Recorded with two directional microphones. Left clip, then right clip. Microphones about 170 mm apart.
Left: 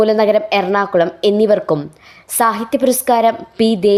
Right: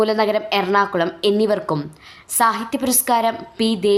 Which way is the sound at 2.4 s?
30° left (ahead or behind).